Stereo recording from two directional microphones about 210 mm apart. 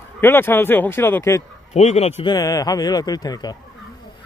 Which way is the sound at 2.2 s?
20° left (ahead or behind).